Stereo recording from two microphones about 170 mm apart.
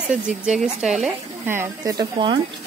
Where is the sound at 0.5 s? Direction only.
5° right (ahead or behind).